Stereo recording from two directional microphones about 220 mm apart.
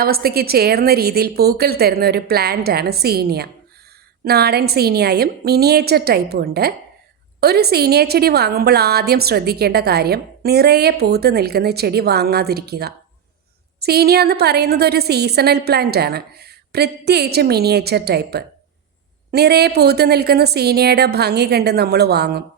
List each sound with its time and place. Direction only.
0.0 s a woman's voice: 45° right (ahead or behind)